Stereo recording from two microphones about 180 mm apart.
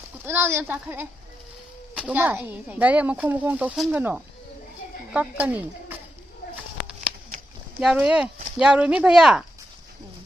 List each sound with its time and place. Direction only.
0.2 s speech: 15° right (ahead or behind)
6.9 s a sound: 5° right (ahead or behind)
7.8 s speech: 5° right (ahead or behind)